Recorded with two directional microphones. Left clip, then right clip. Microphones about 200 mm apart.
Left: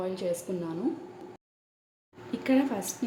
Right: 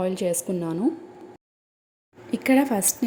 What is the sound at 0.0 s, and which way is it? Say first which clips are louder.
Speech: right 6 dB; 35° right (ahead or behind).